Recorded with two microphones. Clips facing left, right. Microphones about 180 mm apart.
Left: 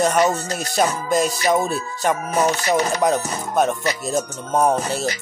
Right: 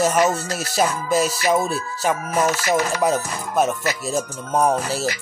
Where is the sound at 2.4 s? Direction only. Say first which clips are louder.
Left 1 dB; 30° left (ahead or behind).